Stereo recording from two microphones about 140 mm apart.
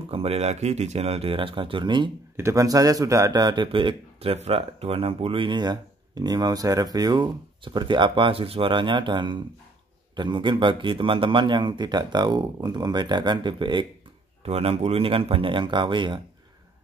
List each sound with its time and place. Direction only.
0.1 s speech: 45° right (ahead or behind)
2.3 s a man's voice: 20° right (ahead or behind)